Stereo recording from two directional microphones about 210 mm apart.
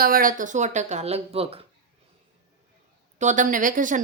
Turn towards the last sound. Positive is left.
turn(degrees=-40)  # may be behind; listen again after turning